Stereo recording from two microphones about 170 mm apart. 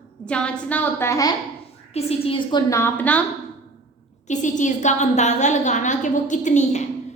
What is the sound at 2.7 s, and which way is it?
Speech, 15° left (ahead or behind).